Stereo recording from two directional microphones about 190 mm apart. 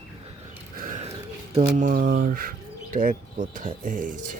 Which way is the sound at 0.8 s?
45° right (ahead or behind).